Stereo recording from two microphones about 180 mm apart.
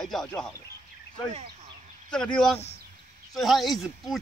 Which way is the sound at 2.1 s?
5° left (ahead or behind).